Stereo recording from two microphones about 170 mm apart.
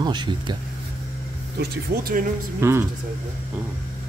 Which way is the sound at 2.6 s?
15° right (ahead or behind).